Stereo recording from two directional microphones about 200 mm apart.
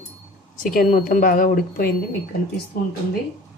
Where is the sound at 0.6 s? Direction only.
45° left (ahead or behind).